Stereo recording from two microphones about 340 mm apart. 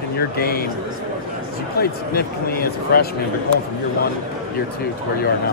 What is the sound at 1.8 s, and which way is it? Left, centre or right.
Speech, left.